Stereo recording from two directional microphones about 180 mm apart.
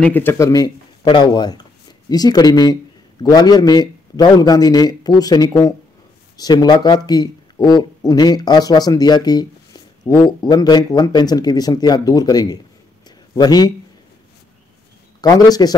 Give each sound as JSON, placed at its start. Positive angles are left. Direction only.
{"t": 0.0, "sound": "speech", "side_deg": 10}
{"t": 15.2, "sound": "speech", "side_deg": 20}